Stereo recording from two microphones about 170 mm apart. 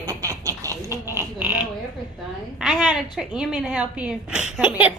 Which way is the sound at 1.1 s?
10° right (ahead or behind).